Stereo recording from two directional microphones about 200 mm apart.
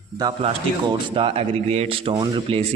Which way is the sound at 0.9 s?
25° right (ahead or behind).